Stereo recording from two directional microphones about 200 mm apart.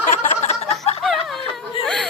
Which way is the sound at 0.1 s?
35° left (ahead or behind).